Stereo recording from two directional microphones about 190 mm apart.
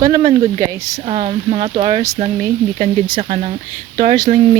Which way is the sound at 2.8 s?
45° right (ahead or behind).